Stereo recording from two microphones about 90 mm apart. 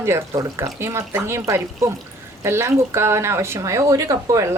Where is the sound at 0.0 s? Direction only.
35° right (ahead or behind).